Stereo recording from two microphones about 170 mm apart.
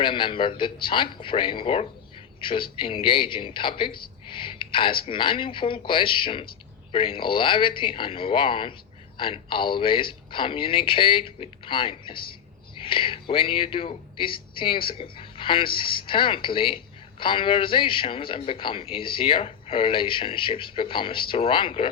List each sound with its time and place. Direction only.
0.0 s speech: 30° left (ahead or behind)